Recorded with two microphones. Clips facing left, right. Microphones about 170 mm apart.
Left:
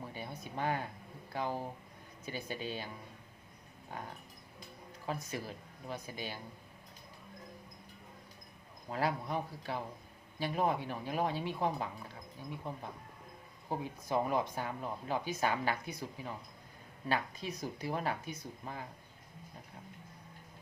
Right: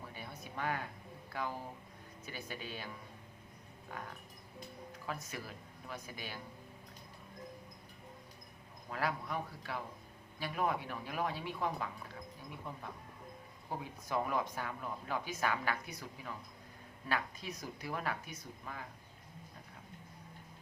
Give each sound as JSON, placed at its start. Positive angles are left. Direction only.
{"t": 0.1, "sound": "a sound", "side_deg": 25}
{"t": 1.3, "sound": "speech", "side_deg": 25}
{"t": 5.1, "sound": "speech", "side_deg": 25}
{"t": 8.9, "sound": "speech", "side_deg": 25}
{"t": 13.7, "sound": "speech", "side_deg": 25}